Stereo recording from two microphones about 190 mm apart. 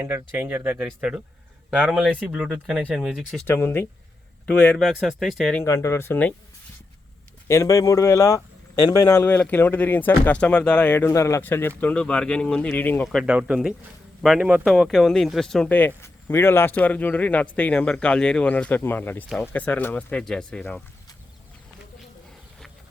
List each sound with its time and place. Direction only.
0.0 s speech: 10° right (ahead or behind)
3.4 s speech: 10° left (ahead or behind)
5.6 s speech: 15° left (ahead or behind)
7.4 s speech: 15° left (ahead or behind)
13.1 s speech: 5° right (ahead or behind)